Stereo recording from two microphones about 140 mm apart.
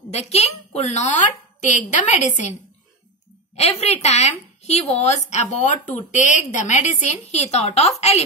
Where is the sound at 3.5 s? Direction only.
50° left (ahead or behind).